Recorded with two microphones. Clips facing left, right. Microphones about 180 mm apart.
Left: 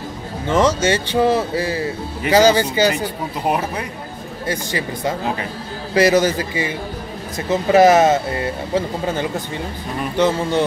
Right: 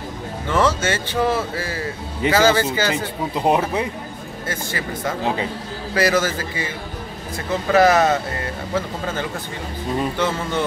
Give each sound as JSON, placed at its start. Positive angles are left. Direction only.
{"t": 0.5, "sound": "speech", "side_deg": 15}
{"t": 3.4, "sound": "speech", "side_deg": -20}
{"t": 4.5, "sound": "a man's voice", "side_deg": 15}